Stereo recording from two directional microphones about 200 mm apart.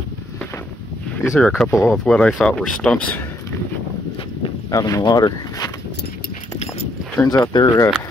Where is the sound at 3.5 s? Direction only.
15° left (ahead or behind).